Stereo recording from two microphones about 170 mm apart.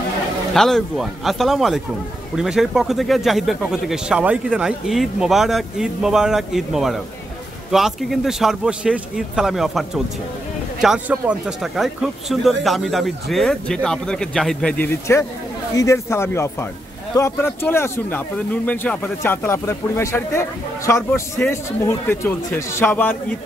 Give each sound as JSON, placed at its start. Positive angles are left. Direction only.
{"t": 0.6, "sound": "speech", "side_deg": 0}